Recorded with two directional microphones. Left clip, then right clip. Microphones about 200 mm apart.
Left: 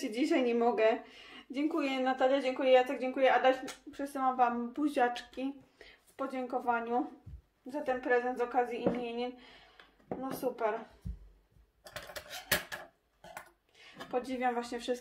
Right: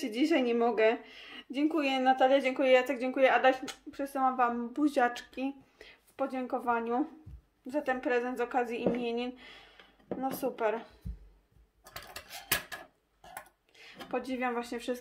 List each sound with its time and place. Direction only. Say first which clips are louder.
0.0 s a woman's voice: right 2 dB; 30° right (ahead or behind)
13.3 s dishes: right 1 dB; 30° right (ahead or behind)